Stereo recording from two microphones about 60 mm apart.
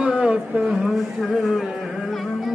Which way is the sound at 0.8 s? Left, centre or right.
Centre.